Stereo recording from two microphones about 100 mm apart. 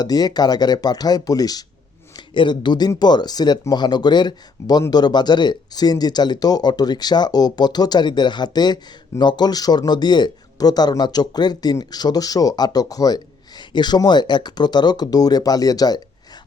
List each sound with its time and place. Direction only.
0.0 s speech: 40° left (ahead or behind)
2.1 s a man's voice: 50° left (ahead or behind)